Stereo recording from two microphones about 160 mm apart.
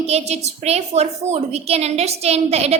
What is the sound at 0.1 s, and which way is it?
A woman's voice, 40° right (ahead or behind).